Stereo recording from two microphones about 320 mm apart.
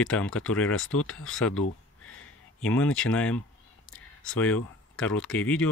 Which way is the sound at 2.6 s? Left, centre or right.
Centre.